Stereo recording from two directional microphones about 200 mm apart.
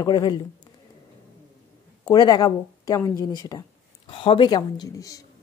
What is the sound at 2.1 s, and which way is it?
Speech, 20° left (ahead or behind).